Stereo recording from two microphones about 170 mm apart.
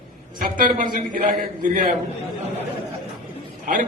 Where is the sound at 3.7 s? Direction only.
45° right (ahead or behind).